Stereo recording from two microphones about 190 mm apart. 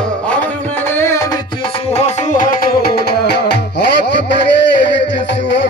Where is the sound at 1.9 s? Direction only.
40° left (ahead or behind); by 3.6 s 60° left (ahead or behind).